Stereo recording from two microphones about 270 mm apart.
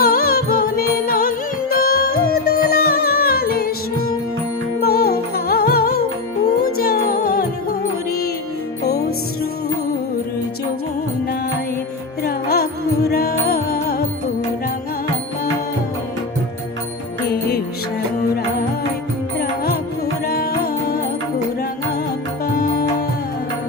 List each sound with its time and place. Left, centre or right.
0.0 s music: left
4.8 s music: left
8.8 s music: left
12.2 s music: left
20.2 s music: left
22.5 s music: left